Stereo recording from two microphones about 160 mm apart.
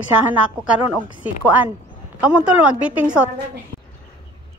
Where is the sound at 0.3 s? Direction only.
5° right (ahead or behind).